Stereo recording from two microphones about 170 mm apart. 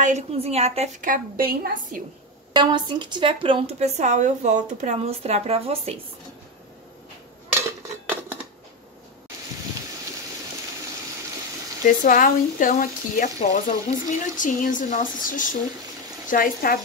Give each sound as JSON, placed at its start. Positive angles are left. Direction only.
{"t": 0.0, "sound": "speech", "side_deg": -40}
{"t": 1.1, "sound": "a woman's voice", "side_deg": -60}
{"t": 2.5, "sound": "speech", "side_deg": -25}
{"t": 11.8, "sound": "speech", "side_deg": 50}